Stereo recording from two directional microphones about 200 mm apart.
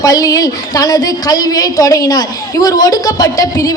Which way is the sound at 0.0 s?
20° left (ahead or behind).